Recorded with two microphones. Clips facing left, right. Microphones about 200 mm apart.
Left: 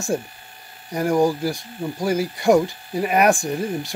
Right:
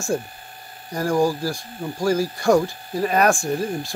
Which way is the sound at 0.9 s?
20° left (ahead or behind).